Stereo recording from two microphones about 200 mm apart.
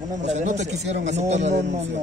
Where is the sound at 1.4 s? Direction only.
60° right (ahead or behind).